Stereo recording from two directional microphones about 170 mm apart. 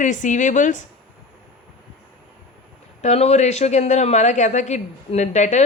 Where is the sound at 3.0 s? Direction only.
40° left (ahead or behind).